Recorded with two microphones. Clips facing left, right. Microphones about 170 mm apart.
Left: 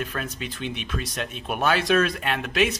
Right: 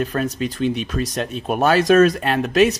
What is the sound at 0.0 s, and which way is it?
Speech, 40° right (ahead or behind).